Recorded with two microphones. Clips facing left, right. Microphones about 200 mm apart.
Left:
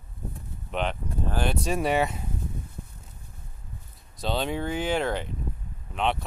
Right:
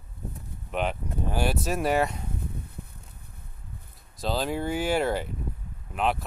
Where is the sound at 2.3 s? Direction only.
60° right (ahead or behind).